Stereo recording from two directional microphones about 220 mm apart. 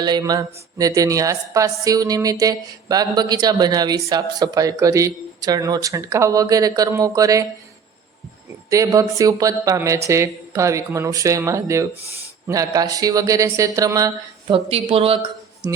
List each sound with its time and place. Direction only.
0.0 s a woman's voice: 20° right (ahead or behind)
8.7 s a woman's voice: 15° right (ahead or behind)